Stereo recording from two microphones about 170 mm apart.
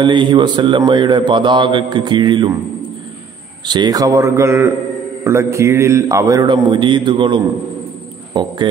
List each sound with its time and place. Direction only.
0.0 s mantra: 30° right (ahead or behind)
5.2 s a man's voice: 15° right (ahead or behind)
6.7 s mantra: 25° right (ahead or behind)
8.3 s speech: 25° right (ahead or behind)